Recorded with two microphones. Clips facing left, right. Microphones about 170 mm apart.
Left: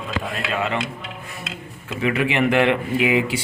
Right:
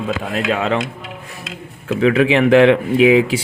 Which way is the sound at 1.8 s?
90° right.